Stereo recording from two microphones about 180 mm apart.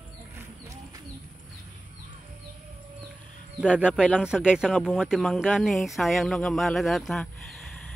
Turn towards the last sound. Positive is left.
turn(degrees=5)  # may be behind; listen again after turning